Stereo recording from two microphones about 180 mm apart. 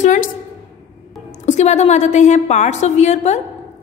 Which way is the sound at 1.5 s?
40° left (ahead or behind).